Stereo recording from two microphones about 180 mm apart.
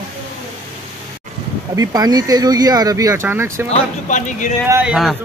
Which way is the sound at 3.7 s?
45° left (ahead or behind).